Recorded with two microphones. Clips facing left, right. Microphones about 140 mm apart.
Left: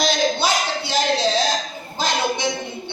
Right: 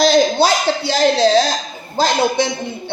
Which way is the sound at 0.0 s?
35° right (ahead or behind).